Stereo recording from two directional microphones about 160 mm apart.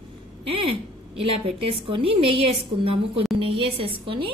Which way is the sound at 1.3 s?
40° right (ahead or behind).